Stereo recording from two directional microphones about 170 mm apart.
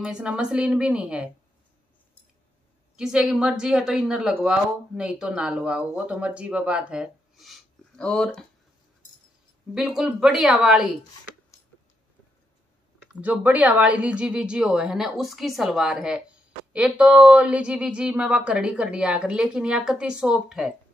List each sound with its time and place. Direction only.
0.0 s speech: 5° right (ahead or behind)
3.0 s speech: 5° right (ahead or behind)
9.8 s speech: 5° right (ahead or behind)
13.1 s speech: 10° right (ahead or behind)